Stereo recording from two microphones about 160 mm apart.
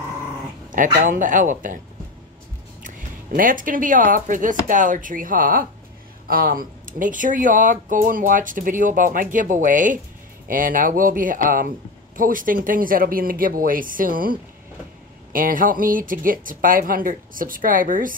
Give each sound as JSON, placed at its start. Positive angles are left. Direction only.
{"t": 0.7, "sound": "speech", "side_deg": -55}
{"t": 2.8, "sound": "speech", "side_deg": -60}
{"t": 15.3, "sound": "speech", "side_deg": -60}